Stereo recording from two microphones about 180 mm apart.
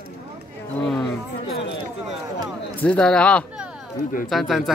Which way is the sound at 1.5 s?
75° left (ahead or behind).